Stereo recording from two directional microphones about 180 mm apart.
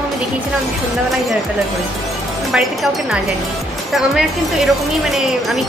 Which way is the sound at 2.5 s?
Centre (ahead or behind).